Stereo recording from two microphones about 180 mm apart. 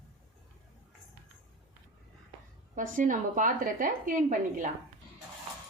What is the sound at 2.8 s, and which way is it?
Speech, 45° right (ahead or behind).